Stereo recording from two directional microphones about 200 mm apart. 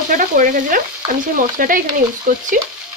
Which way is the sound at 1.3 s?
45° right (ahead or behind).